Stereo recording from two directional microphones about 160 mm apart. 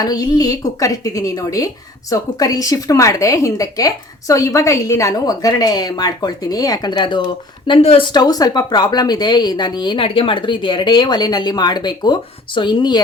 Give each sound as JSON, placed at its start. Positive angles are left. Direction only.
{"t": 0.0, "sound": "speech", "side_deg": 25}
{"t": 8.1, "sound": "speech", "side_deg": 25}